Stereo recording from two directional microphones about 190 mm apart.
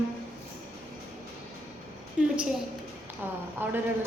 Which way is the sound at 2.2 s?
5° right (ahead or behind).